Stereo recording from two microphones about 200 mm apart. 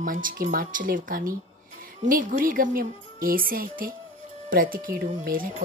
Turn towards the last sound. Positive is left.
turn(degrees=-45)  # may be behind; listen again after turning